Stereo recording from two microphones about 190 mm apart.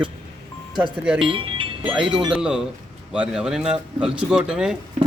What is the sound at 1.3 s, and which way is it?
Music, 25° right (ahead or behind).